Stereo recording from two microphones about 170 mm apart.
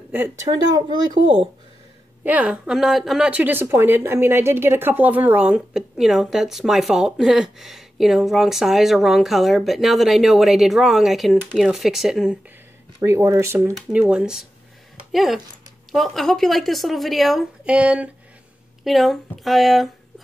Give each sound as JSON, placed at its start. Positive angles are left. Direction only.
{"t": 0.1, "sound": "speech", "side_deg": -10}
{"t": 0.5, "sound": "speech", "side_deg": -25}
{"t": 2.2, "sound": "a woman's voice", "side_deg": -10}
{"t": 13.0, "sound": "a woman's voice", "side_deg": -15}